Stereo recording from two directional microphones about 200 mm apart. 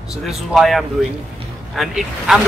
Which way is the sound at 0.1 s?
Centre (ahead or behind).